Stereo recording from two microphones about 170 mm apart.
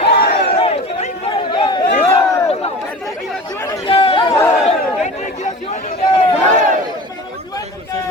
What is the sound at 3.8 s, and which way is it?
Chatter, 30° left (ahead or behind).